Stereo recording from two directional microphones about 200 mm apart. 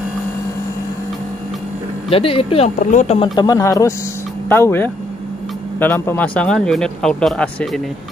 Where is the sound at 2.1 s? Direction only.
25° left (ahead or behind); by 7.8 s 5° left (ahead or behind).